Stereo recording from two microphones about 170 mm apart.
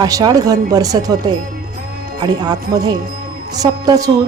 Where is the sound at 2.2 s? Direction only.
25° right (ahead or behind).